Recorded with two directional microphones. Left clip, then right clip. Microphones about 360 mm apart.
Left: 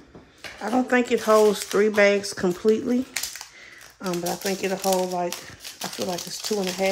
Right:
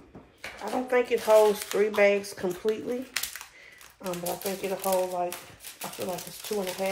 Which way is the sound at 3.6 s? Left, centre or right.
Left.